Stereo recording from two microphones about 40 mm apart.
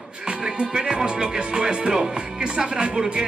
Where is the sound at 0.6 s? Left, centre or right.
Right.